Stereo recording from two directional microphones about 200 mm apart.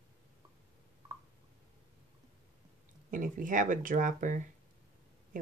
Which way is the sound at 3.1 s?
40° right (ahead or behind).